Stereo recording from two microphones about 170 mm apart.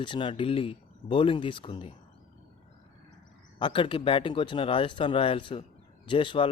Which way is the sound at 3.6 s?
30° left (ahead or behind).